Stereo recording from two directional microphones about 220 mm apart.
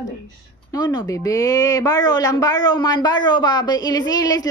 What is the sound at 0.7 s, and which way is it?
Speech, 20° left (ahead or behind).